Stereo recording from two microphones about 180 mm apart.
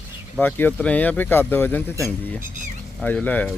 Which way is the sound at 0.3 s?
10° left (ahead or behind).